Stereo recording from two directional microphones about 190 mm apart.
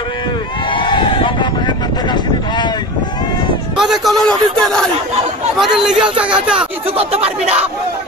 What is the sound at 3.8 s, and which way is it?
A man's voice, centre (ahead or behind).